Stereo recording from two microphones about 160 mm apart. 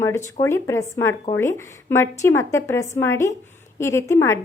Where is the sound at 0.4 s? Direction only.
15° left (ahead or behind).